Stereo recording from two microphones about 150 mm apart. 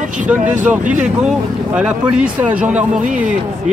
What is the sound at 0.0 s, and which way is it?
Vehicle, 60° right (ahead or behind).